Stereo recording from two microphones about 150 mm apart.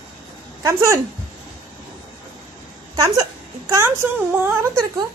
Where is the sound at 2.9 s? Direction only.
25° right (ahead or behind).